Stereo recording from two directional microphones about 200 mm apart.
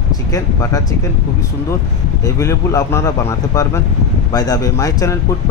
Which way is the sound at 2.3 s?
15° left (ahead or behind).